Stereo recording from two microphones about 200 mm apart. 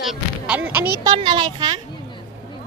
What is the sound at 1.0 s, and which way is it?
Speech, 25° right (ahead or behind).